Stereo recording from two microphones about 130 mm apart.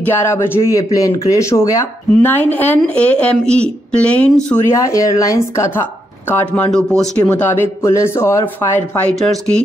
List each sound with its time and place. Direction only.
0.0 s speech: 20° left (ahead or behind)
4.8 s speech: 25° left (ahead or behind)
9.1 s speech: 5° left (ahead or behind)